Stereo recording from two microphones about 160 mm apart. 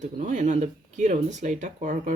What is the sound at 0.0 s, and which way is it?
Speech, 50° right (ahead or behind).